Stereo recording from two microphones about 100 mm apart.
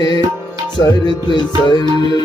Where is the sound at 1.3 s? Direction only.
50° left (ahead or behind).